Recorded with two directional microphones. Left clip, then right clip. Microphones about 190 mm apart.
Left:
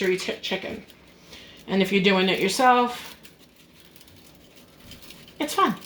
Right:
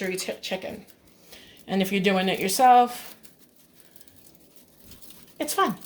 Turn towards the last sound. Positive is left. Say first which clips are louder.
# left 2 dB
turn(degrees=-35)  # may be behind; listen again after turning